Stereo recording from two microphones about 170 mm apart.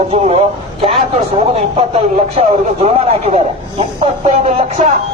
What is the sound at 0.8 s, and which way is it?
A man's voice, 35° right (ahead or behind).